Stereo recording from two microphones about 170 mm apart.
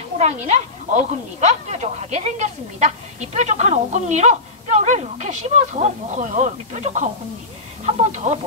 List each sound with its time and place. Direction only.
0.2 s speech: 40° right (ahead or behind)